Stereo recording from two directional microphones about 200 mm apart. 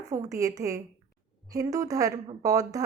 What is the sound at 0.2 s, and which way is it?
A woman's voice, 15° right (ahead or behind).